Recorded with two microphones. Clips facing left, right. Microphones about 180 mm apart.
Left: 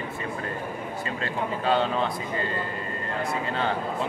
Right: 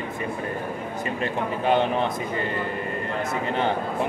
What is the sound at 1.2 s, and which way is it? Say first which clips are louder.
Speech: right 3 dB; 20° right (ahead or behind).